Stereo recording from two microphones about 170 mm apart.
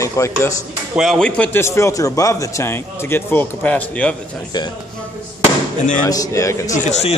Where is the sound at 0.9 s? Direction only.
5° left (ahead or behind).